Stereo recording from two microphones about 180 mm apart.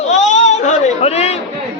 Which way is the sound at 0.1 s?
40° left (ahead or behind).